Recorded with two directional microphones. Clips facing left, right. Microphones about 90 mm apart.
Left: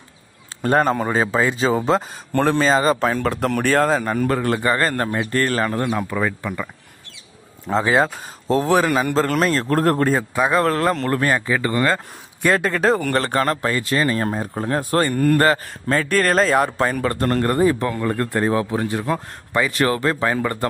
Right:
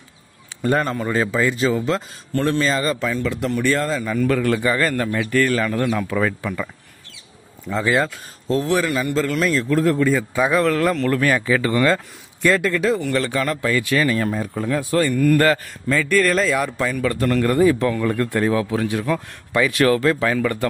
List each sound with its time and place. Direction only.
1.0 s a man's voice: 25° left (ahead or behind)
3.1 s a man's voice: 50° left (ahead or behind)
5.8 s a man's voice: 25° left (ahead or behind)
6.0 s speech: 10° left (ahead or behind)
7.7 s speech: 55° left (ahead or behind)
8.0 s a man's voice: 30° left (ahead or behind); by 10.1 s 50° left (ahead or behind)
10.5 s a man's voice: 35° left (ahead or behind)
12.7 s speech: 50° left (ahead or behind)
15.3 s speech: 30° left (ahead or behind)
15.9 s a man's voice: 50° left (ahead or behind)
17.8 s a man's voice: 25° left (ahead or behind)